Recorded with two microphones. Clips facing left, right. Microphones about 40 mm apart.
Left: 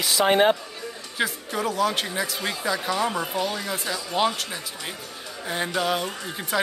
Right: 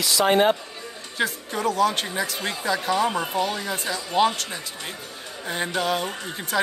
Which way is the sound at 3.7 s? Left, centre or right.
Centre.